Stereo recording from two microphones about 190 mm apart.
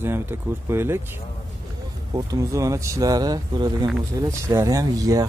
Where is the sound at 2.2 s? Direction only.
20° right (ahead or behind).